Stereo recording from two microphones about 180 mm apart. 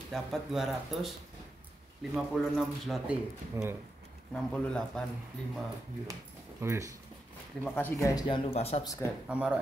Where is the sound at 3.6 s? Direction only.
15° right (ahead or behind).